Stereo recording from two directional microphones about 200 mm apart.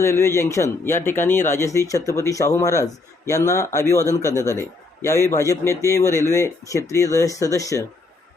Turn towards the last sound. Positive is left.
turn(degrees=15)  # may be behind; listen again after turning